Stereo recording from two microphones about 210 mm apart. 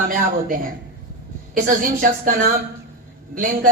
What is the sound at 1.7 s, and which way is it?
Speech, 40° right (ahead or behind).